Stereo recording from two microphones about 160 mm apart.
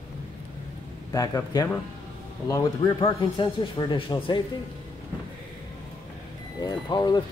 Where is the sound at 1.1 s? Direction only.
20° left (ahead or behind).